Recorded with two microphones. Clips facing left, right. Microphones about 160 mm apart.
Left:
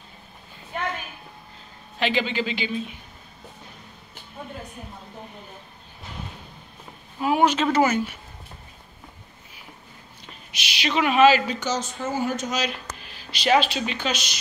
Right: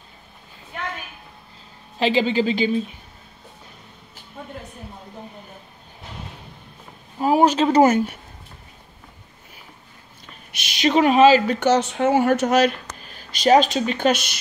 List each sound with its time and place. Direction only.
2.0 s speech: 35° right (ahead or behind)
7.2 s speech: 35° right (ahead or behind)
10.5 s speech: 50° right (ahead or behind); by 11.4 s 35° right (ahead or behind)
11.4 s a woman's voice: 60° right (ahead or behind)
13.0 s speech: 45° right (ahead or behind)